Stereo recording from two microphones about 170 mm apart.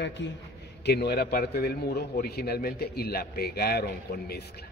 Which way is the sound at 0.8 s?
70° left (ahead or behind).